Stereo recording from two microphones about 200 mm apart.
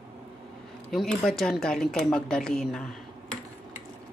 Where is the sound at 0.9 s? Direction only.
Centre (ahead or behind).